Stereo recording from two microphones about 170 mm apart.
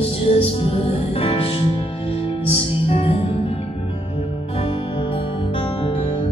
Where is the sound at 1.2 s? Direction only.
35° left (ahead or behind).